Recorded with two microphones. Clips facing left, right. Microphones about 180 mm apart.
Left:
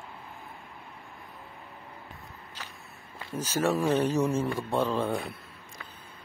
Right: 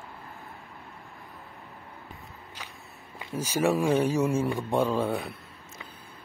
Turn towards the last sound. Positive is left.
turn(degrees=-5)  # may be behind; listen again after turning